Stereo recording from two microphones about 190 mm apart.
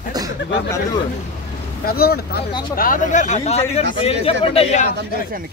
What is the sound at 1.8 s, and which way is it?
Speech, 55° left (ahead or behind).